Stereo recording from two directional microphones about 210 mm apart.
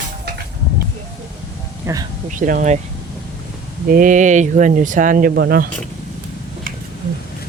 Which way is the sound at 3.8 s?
40° right (ahead or behind).